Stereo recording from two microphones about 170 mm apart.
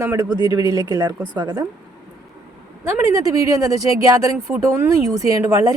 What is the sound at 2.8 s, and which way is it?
Speech, 15° right (ahead or behind).